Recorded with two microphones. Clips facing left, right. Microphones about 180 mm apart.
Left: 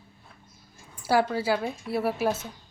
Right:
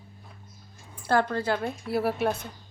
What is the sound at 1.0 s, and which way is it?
A woman's voice, 5° left (ahead or behind).